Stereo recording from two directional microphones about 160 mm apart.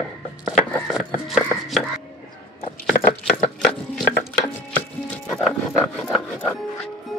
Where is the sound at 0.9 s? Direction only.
Centre (ahead or behind).